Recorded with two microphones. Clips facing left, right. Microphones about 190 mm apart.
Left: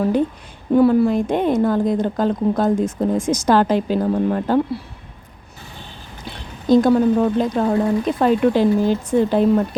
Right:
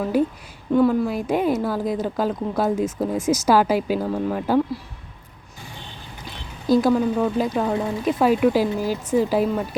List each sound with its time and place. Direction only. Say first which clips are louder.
0.0 s speech: left 3 dB; 5° right (ahead or behind)
6.7 s speech: left 4 dB; 5° right (ahead or behind)